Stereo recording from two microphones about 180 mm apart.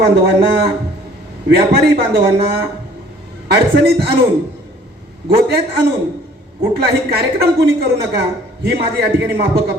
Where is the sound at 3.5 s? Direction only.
65° right (ahead or behind).